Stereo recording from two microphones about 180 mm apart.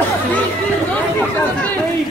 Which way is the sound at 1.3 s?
10° left (ahead or behind).